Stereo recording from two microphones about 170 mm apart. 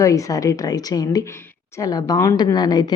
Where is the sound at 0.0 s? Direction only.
20° left (ahead or behind).